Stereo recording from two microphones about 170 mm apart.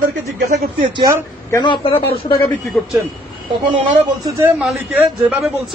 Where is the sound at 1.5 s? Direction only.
25° left (ahead or behind).